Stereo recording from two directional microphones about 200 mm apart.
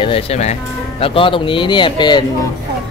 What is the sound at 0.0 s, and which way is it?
Speech, 30° left (ahead or behind).